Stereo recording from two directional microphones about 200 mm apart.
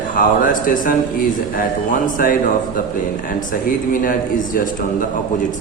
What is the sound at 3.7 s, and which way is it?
Speech, 45° left (ahead or behind).